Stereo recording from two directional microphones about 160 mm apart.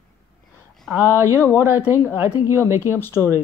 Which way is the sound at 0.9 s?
15° right (ahead or behind).